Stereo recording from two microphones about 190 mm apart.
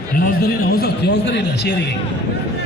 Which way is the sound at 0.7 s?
60° left (ahead or behind).